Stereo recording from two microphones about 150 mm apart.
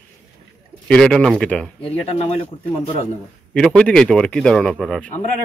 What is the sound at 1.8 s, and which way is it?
Speech, 40° left (ahead or behind).